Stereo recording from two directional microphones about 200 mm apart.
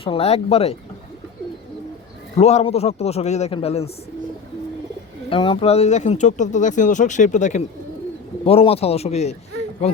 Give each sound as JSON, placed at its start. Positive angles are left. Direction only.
{"t": 0.0, "sound": "speech", "side_deg": 30}
{"t": 2.4, "sound": "speech", "side_deg": 30}
{"t": 5.3, "sound": "speech", "side_deg": 25}